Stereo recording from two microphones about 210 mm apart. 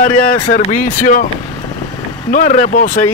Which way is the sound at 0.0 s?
40° left (ahead or behind).